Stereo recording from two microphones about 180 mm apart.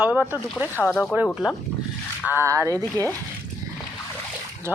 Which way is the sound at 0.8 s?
5° left (ahead or behind).